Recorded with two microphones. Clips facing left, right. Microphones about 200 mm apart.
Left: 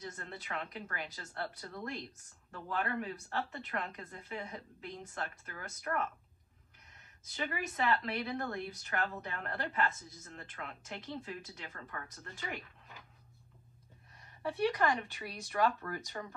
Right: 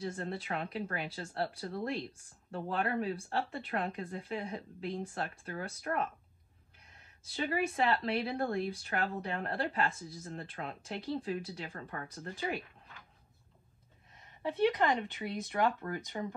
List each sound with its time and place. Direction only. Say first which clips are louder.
0.0 s speech: right 8 dB; 30° right (ahead or behind)
14.1 s speech: right 2 dB; 20° right (ahead or behind)